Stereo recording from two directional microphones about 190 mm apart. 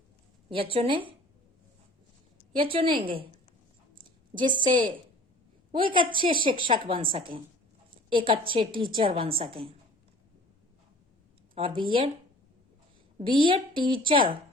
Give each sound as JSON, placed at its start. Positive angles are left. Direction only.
{"t": 0.5, "sound": "a woman's voice", "side_deg": -30}
{"t": 2.6, "sound": "a woman's voice", "side_deg": -25}
{"t": 3.9, "sound": "a sound", "side_deg": -25}
{"t": 5.7, "sound": "a woman's voice", "side_deg": -25}
{"t": 11.5, "sound": "a woman's voice", "side_deg": -25}
{"t": 13.1, "sound": "a woman's voice", "side_deg": -25}